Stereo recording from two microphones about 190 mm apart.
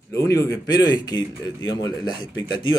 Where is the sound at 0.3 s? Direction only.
20° left (ahead or behind).